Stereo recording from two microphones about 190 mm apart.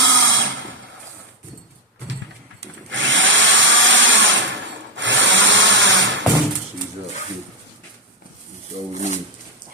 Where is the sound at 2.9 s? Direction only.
75° right (ahead or behind).